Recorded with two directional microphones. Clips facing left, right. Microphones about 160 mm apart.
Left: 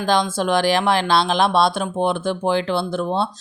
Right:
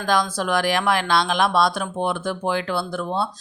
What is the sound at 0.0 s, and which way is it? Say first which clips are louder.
Speech: left 3 dB; 25° left (ahead or behind).